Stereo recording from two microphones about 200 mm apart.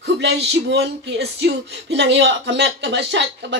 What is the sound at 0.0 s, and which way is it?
Speech, 60° right (ahead or behind).